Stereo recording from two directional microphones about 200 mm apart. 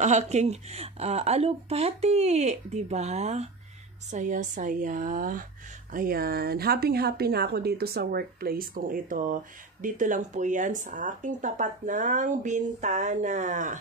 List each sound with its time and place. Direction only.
0.0 s a woman's voice: 35° right (ahead or behind)